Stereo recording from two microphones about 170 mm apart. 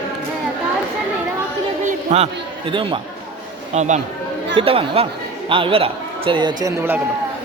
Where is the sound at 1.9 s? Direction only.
40° right (ahead or behind).